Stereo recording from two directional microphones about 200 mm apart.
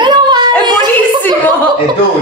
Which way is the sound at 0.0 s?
20° right (ahead or behind).